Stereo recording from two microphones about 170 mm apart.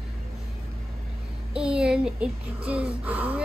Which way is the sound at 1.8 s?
Centre (ahead or behind).